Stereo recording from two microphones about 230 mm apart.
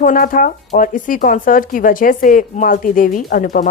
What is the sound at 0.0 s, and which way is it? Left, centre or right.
A woman's voice, left.